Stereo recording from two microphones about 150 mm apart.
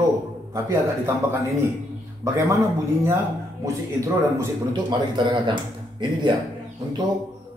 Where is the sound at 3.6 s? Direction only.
20° right (ahead or behind).